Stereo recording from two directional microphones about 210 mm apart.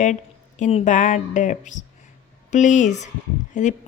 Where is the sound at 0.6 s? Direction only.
30° left (ahead or behind).